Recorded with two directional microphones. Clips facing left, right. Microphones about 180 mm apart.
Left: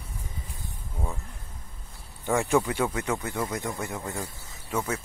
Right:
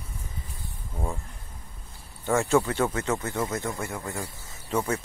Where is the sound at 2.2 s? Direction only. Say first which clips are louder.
Right 1 dB; 15° left (ahead or behind).